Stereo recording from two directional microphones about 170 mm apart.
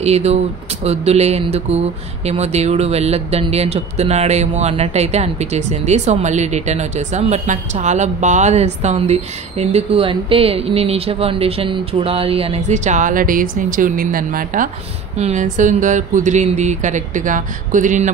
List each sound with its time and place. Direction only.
0.0 s speech: 40° right (ahead or behind); by 14.7 s 55° right (ahead or behind)
15.1 s speech: 40° right (ahead or behind)